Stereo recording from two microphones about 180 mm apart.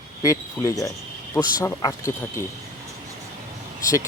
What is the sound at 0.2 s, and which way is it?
Speech, 20° left (ahead or behind).